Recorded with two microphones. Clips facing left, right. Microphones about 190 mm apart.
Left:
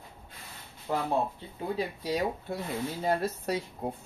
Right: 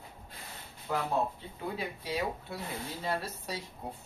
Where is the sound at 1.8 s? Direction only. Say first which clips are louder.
Left 6 dB; 40° left (ahead or behind).